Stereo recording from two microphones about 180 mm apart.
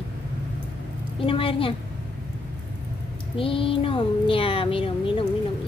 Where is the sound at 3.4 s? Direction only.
30° left (ahead or behind).